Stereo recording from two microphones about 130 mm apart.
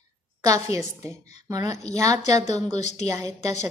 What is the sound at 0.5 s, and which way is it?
A woman's voice, 25° right (ahead or behind).